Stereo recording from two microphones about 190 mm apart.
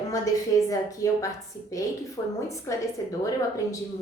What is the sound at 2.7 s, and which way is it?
Speech, 15° left (ahead or behind).